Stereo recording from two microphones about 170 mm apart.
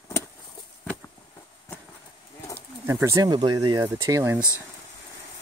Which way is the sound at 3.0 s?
20° right (ahead or behind).